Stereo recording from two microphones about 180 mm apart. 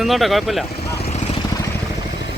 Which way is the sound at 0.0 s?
Centre (ahead or behind).